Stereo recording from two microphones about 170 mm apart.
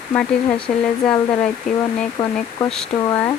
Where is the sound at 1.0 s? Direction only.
5° left (ahead or behind).